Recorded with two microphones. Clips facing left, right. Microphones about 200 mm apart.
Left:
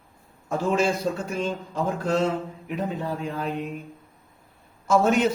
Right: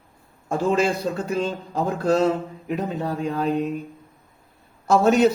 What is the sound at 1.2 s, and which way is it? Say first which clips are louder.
A man's voice: right 3 dB; 35° right (ahead or behind).